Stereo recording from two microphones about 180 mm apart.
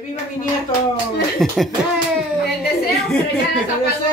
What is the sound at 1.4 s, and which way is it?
Beatboxing, centre (ahead or behind).